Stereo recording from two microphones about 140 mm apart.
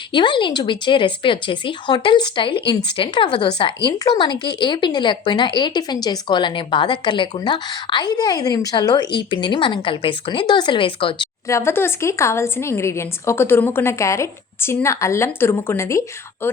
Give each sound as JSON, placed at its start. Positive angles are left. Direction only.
{"t": 0.1, "sound": "speech", "side_deg": 35}
{"t": 3.9, "sound": "speech", "side_deg": 30}
{"t": 11.4, "sound": "speech", "side_deg": 20}